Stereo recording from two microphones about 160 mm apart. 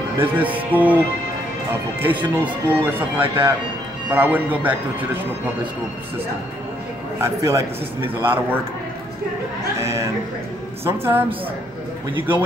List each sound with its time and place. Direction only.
0.2 s a man's voice: 10° right (ahead or behind)
7.2 s a man's voice: 15° right (ahead or behind)
9.8 s a man's voice: 20° right (ahead or behind)